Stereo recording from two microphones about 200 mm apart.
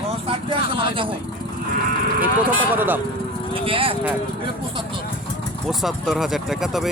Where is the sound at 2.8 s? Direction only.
10° right (ahead or behind).